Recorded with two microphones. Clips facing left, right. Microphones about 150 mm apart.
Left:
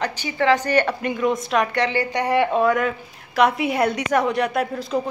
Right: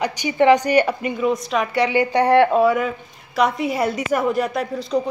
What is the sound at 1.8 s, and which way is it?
A woman's voice, 15° right (ahead or behind).